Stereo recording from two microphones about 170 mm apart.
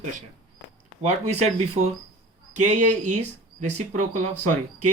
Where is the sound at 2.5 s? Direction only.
45° right (ahead or behind).